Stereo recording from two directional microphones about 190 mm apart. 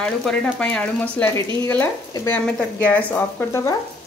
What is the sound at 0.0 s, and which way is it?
Speech, 5° left (ahead or behind).